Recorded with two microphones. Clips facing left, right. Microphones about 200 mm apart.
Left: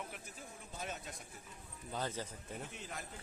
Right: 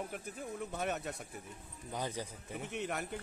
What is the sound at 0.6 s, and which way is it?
Speech, 65° right (ahead or behind).